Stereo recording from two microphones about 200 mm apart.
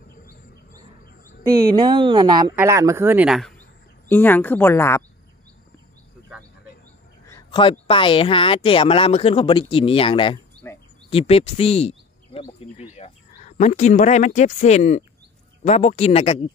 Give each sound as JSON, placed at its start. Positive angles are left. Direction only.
{"t": 1.8, "sound": "a woman's voice", "side_deg": -20}
{"t": 7.8, "sound": "speech", "side_deg": 25}
{"t": 10.6, "sound": "speech", "side_deg": 10}
{"t": 11.1, "sound": "speech", "side_deg": 30}